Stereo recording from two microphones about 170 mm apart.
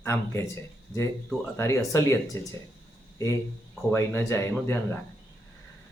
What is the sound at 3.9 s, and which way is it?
Speech, 15° left (ahead or behind).